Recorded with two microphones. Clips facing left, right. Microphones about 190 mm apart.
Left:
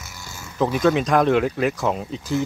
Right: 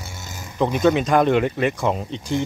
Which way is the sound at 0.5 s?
Centre (ahead or behind).